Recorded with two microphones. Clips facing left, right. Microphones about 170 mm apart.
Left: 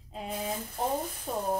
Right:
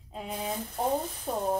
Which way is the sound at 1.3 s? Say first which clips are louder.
Right 2 dB; 50° right (ahead or behind).